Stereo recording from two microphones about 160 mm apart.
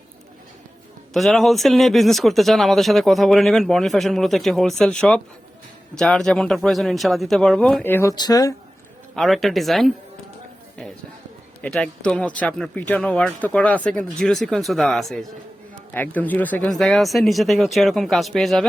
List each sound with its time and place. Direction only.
1.1 s speech: centre (ahead or behind)
8.1 s speech: 25° left (ahead or behind)
9.1 s speech: centre (ahead or behind)
11.6 s a man's voice: 5° left (ahead or behind)